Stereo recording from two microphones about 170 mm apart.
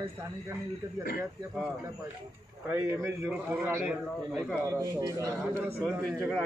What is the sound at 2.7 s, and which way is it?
A man's voice, 15° right (ahead or behind).